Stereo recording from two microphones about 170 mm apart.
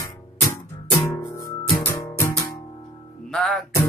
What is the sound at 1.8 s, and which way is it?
Music, 15° left (ahead or behind).